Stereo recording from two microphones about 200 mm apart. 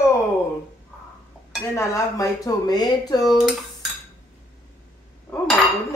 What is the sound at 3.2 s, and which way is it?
Dishes, 5° right (ahead or behind).